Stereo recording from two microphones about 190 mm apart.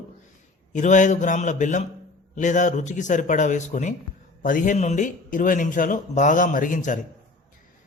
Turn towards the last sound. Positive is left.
turn(degrees=45)  # may be behind; listen again after turning